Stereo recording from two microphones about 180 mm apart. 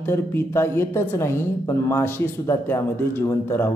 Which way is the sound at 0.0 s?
10° left (ahead or behind).